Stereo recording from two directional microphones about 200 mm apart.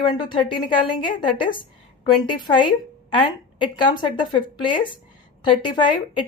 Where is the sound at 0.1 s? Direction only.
25° left (ahead or behind).